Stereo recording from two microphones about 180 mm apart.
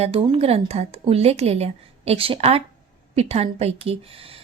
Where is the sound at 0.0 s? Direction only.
30° right (ahead or behind).